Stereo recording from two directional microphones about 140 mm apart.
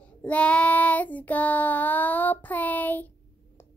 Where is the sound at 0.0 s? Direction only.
10° left (ahead or behind).